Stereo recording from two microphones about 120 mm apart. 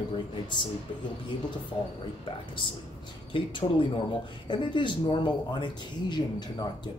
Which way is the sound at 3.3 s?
45° left (ahead or behind).